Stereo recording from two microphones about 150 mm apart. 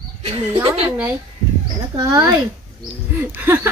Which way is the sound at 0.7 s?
10° right (ahead or behind).